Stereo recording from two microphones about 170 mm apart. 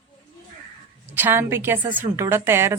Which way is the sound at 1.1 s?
10° right (ahead or behind).